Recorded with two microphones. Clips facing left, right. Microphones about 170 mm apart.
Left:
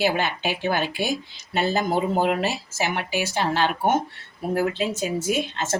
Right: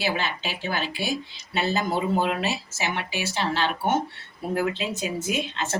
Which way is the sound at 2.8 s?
45° left (ahead or behind).